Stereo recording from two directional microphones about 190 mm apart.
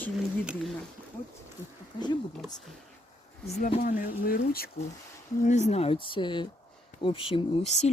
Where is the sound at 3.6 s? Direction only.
40° left (ahead or behind).